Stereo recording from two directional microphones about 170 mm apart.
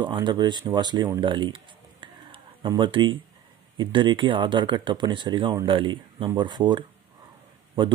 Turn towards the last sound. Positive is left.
turn(degrees=-25)  # may be behind; listen again after turning